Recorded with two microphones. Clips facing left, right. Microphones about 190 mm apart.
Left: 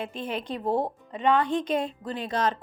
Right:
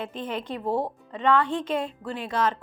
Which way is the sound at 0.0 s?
15° left (ahead or behind).